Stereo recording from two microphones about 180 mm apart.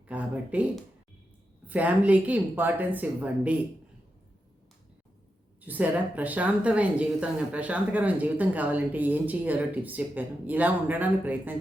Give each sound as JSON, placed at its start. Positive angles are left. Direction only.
{"t": 0.1, "sound": "speech", "side_deg": -10}
{"t": 1.6, "sound": "a woman's voice", "side_deg": -10}
{"t": 5.5, "sound": "a woman's voice", "side_deg": -10}